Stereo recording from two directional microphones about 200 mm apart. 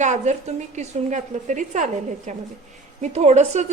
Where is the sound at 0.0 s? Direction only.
35° right (ahead or behind).